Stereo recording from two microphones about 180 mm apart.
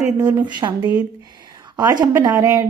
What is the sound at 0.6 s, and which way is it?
Speech, 25° right (ahead or behind).